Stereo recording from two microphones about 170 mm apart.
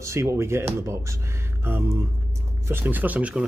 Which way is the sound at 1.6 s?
15° right (ahead or behind).